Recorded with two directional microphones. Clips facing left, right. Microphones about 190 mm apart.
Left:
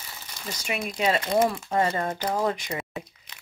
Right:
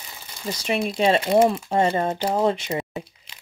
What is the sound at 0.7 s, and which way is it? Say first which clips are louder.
Speech: right 6 dB; 30° right (ahead or behind).